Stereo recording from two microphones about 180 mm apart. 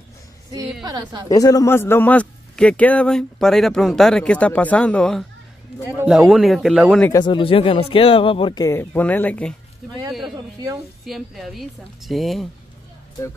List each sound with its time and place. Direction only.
0.8 s a woman's voice: 20° right (ahead or behind)
1.3 s a man's voice: 20° left (ahead or behind); by 7.0 s centre (ahead or behind)
7.0 s speech: 20° left (ahead or behind)
8.6 s a man's voice: 10° left (ahead or behind)
11.1 s speech: centre (ahead or behind)